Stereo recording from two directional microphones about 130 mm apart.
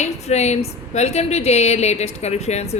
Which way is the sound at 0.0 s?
60° left (ahead or behind).